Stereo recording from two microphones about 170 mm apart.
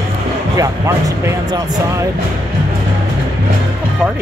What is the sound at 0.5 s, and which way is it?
Speech, 20° right (ahead or behind).